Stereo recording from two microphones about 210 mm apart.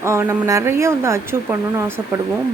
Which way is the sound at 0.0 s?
15° right (ahead or behind).